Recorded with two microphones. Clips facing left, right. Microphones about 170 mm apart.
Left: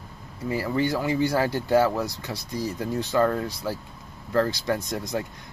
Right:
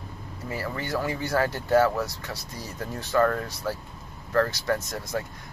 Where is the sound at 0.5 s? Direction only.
15° left (ahead or behind).